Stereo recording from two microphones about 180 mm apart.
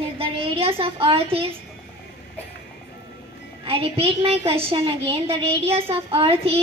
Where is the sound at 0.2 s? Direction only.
30° right (ahead or behind).